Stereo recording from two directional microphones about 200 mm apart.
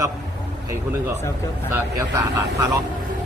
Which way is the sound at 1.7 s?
15° right (ahead or behind).